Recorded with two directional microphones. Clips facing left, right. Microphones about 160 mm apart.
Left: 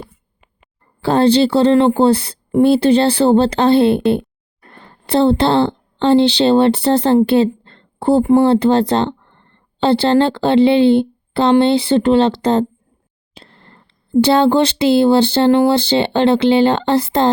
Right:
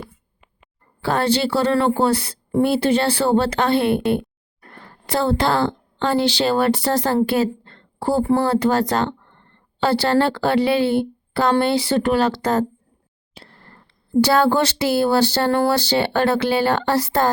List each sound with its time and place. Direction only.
1.0 s speech: 30° left (ahead or behind)